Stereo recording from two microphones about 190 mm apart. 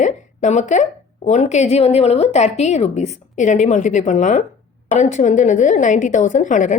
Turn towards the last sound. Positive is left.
turn(degrees=40)  # may be behind; listen again after turning